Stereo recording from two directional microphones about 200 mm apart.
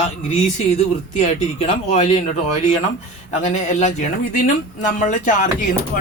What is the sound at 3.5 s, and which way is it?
Speech, 35° left (ahead or behind).